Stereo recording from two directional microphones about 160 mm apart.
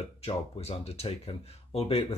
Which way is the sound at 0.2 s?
40° left (ahead or behind).